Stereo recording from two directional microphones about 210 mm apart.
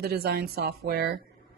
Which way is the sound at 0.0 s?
50° right (ahead or behind).